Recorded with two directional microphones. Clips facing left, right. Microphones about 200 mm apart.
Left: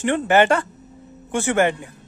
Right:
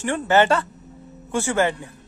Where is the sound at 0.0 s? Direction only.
20° left (ahead or behind).